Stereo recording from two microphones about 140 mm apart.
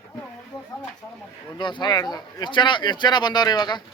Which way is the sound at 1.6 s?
35° left (ahead or behind).